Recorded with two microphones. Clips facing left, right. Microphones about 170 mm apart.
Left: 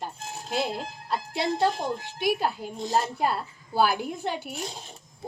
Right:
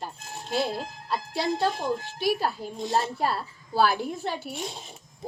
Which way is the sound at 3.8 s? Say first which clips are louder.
Even; 15° left (ahead or behind).